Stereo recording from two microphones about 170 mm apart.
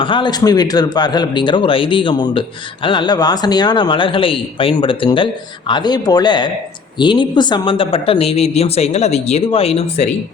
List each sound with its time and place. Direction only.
0.0 s a man's voice: 30° left (ahead or behind)